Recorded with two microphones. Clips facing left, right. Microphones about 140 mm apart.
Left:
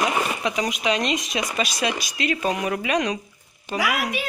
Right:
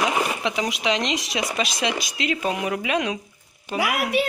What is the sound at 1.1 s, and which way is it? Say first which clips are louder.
Speech: left 1 dB; 85° right.